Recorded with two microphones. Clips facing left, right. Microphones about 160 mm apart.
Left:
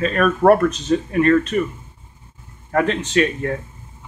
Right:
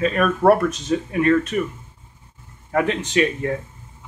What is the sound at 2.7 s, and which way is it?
Speech, 15° right (ahead or behind).